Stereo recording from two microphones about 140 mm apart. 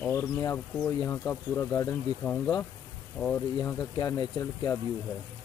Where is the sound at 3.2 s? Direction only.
5° left (ahead or behind).